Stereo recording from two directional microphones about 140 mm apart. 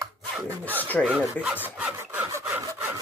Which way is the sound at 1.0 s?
10° right (ahead or behind).